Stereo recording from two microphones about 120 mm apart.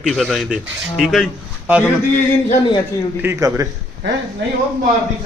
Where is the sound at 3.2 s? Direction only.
25° right (ahead or behind).